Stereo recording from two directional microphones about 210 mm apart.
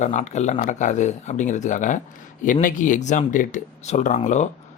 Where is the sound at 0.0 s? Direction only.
35° left (ahead or behind).